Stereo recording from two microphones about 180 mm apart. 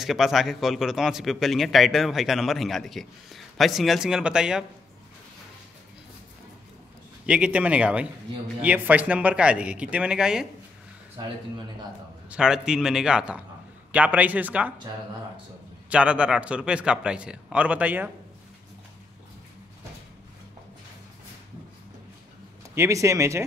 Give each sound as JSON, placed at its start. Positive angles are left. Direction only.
{"t": 0.0, "sound": "speech", "side_deg": 0}
{"t": 7.2, "sound": "a man's voice", "side_deg": -5}
{"t": 12.3, "sound": "a man's voice", "side_deg": -5}
{"t": 15.9, "sound": "a man's voice", "side_deg": -5}
{"t": 22.8, "sound": "a man's voice", "side_deg": -15}